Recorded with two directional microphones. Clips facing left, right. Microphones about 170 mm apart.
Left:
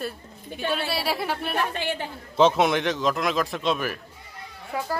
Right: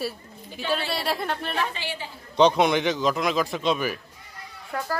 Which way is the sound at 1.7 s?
55° left (ahead or behind).